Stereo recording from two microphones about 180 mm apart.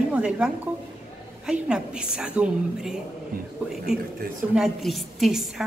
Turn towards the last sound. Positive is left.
turn(degrees=0)  # may be behind; listen again after turning